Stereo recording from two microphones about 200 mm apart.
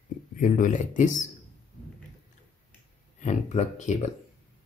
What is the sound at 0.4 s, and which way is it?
Speech, 40° left (ahead or behind).